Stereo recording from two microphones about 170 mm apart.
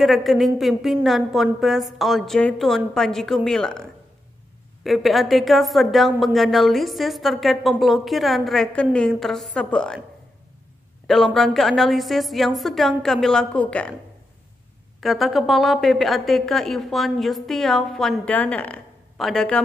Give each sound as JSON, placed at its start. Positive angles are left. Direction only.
{"t": 0.0, "sound": "a woman's voice", "side_deg": 0}
{"t": 4.8, "sound": "a woman's voice", "side_deg": 0}
{"t": 11.1, "sound": "a woman's voice", "side_deg": 0}
{"t": 15.0, "sound": "a woman's voice", "side_deg": 0}